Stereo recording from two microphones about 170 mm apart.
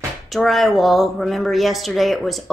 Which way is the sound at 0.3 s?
Centre (ahead or behind).